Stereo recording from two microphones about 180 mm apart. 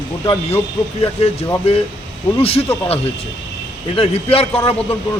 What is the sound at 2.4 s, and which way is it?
Speech, 35° left (ahead or behind).